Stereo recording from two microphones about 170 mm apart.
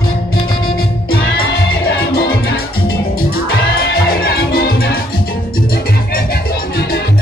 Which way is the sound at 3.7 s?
65° left (ahead or behind).